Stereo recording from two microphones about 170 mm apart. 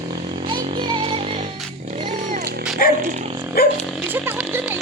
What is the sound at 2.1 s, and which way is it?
Music, 50° right (ahead or behind).